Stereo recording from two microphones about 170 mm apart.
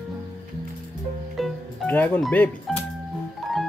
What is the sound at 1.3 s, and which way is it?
Music, centre (ahead or behind).